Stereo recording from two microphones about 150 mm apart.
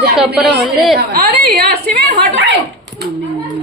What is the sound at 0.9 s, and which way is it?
Speech, 90° right.